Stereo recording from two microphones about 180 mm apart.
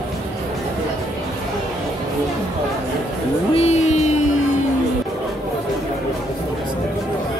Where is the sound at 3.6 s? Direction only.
35° left (ahead or behind).